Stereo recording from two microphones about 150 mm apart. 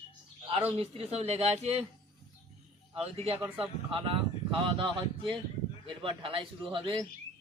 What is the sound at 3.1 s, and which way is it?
A man's voice, 40° right (ahead or behind).